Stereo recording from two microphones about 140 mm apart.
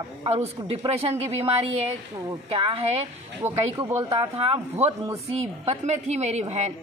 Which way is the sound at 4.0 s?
45° right (ahead or behind).